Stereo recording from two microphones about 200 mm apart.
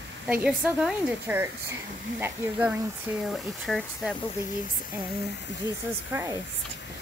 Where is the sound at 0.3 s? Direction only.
5° right (ahead or behind).